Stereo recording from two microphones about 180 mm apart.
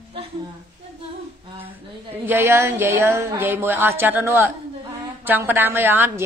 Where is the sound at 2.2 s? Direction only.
10° right (ahead or behind).